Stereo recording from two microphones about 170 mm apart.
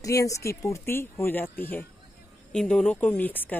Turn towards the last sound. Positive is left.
turn(degrees=10)  # may be behind; listen again after turning